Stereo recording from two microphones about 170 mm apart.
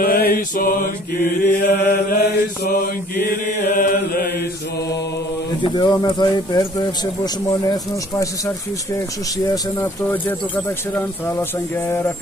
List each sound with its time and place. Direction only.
0.0 s mantra: 60° left (ahead or behind)
3.7 s chant: 55° left (ahead or behind)
5.6 s speech: 25° left (ahead or behind)
9.5 s speech: 10° left (ahead or behind)